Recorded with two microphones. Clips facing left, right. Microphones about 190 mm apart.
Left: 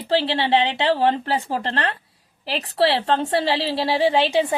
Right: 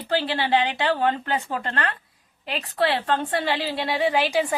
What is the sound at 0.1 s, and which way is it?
A woman's voice, 25° left (ahead or behind).